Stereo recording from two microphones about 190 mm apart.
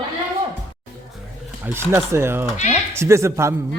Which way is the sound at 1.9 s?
15° right (ahead or behind).